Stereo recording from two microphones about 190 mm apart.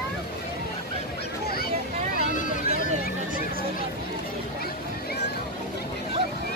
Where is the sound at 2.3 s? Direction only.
45° left (ahead or behind).